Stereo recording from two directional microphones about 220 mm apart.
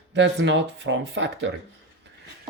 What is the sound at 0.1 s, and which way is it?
Speech, 55° right (ahead or behind).